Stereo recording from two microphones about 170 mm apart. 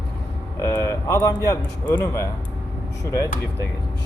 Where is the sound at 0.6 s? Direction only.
15° left (ahead or behind).